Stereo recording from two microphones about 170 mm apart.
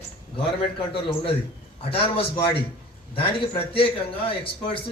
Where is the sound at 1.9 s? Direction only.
35° left (ahead or behind).